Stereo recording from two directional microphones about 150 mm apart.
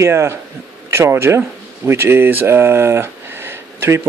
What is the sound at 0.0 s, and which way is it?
Speech, 20° right (ahead or behind).